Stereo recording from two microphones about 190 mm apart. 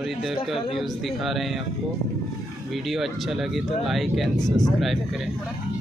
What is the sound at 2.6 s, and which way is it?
Speech, centre (ahead or behind).